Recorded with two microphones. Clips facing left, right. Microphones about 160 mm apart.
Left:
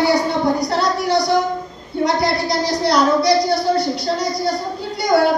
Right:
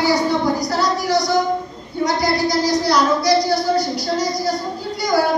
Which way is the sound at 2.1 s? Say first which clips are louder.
Even; 65° left (ahead or behind).